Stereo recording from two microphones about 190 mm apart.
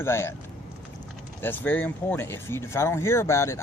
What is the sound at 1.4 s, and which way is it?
Speech, 10° left (ahead or behind).